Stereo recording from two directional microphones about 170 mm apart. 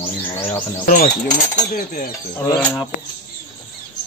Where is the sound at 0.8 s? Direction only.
55° left (ahead or behind).